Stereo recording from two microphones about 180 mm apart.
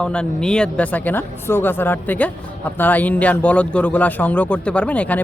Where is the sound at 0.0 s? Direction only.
5° left (ahead or behind).